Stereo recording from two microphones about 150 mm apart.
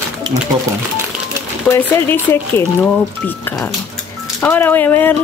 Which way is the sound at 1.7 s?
15° left (ahead or behind).